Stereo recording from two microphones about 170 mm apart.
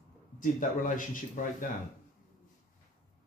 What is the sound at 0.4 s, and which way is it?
A man's voice, 50° left (ahead or behind).